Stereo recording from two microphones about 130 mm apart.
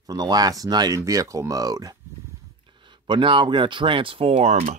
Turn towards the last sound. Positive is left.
turn(degrees=-60)  # may be behind; listen again after turning